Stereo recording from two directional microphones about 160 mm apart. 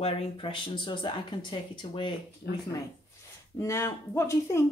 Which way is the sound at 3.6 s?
20° left (ahead or behind).